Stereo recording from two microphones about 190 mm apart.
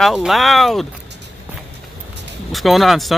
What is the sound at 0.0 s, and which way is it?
Speech, centre (ahead or behind).